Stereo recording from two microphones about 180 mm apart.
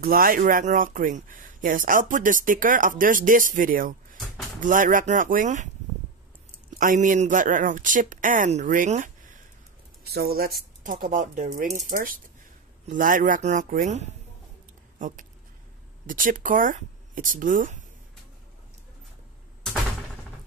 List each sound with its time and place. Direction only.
0.0 s speech: 55° right (ahead or behind)
6.8 s speech: 45° right (ahead or behind)
10.1 s speech: 60° right (ahead or behind)
10.8 s speech: 45° right (ahead or behind)